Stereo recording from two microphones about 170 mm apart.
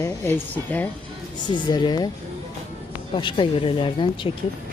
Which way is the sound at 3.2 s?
30° left (ahead or behind).